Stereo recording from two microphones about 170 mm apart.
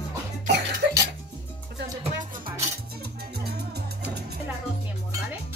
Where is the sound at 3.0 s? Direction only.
70° right (ahead or behind).